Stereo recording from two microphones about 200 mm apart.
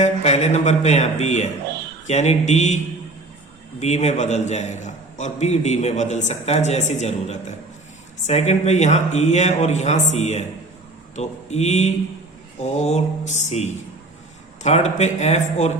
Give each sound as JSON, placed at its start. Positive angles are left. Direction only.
{"t": 0.0, "sound": "a man's voice", "side_deg": 35}
{"t": 3.8, "sound": "a man's voice", "side_deg": 35}